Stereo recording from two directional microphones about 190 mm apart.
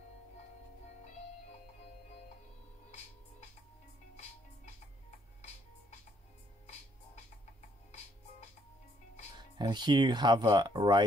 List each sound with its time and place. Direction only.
9.6 s speech: 25° right (ahead or behind)